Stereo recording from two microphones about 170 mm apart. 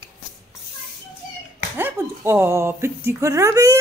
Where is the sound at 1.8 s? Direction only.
15° right (ahead or behind).